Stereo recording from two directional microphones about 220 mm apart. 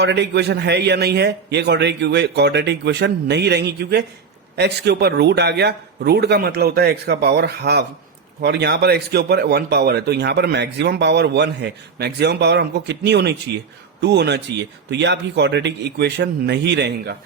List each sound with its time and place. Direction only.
0.0 s speech: 50° right (ahead or behind)